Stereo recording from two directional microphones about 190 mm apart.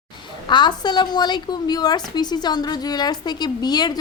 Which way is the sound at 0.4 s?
25° left (ahead or behind).